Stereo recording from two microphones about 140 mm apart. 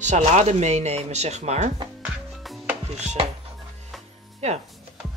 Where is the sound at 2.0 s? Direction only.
Centre (ahead or behind).